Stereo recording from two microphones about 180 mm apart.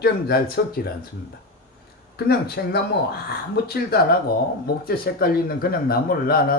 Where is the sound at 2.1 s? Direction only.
60° left (ahead or behind).